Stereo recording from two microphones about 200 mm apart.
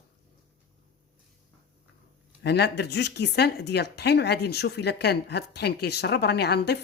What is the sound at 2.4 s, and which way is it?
Speech, 55° left (ahead or behind).